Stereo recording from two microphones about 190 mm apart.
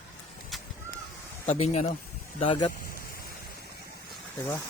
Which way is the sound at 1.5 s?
35° left (ahead or behind).